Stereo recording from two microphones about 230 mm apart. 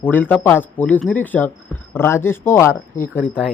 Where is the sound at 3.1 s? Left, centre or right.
Centre.